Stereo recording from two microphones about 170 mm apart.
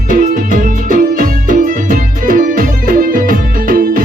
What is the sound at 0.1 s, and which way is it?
Music, 55° right (ahead or behind).